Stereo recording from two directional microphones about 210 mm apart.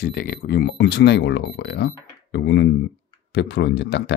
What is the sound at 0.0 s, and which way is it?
Speech, 45° left (ahead or behind).